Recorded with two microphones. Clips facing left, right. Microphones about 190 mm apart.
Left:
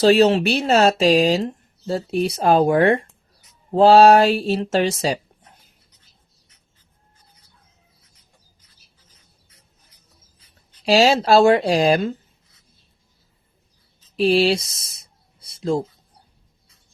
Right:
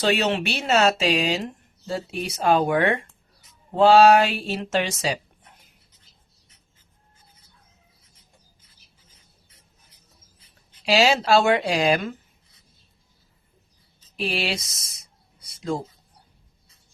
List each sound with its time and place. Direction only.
0.0 s speech: 35° left (ahead or behind)
10.8 s speech: 35° left (ahead or behind)
14.2 s speech: 35° left (ahead or behind)